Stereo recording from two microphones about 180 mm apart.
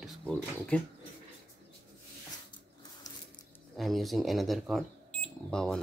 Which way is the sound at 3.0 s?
20° left (ahead or behind).